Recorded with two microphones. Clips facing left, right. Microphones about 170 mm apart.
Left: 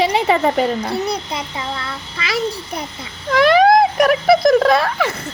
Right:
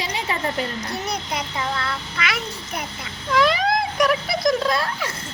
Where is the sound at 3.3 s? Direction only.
60° left (ahead or behind).